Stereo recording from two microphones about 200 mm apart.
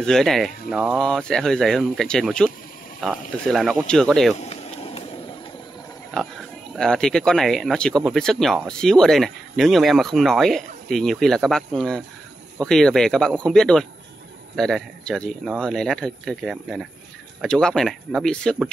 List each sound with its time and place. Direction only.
0.0 s speech: centre (ahead or behind)
4.4 s a sound: 30° left (ahead or behind)
6.1 s speech: 5° left (ahead or behind)